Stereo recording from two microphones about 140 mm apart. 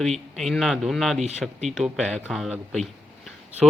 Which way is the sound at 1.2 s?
50° right (ahead or behind).